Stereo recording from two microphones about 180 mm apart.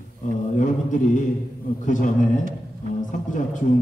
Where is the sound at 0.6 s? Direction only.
45° left (ahead or behind).